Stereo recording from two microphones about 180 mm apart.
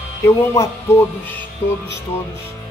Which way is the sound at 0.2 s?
15° left (ahead or behind).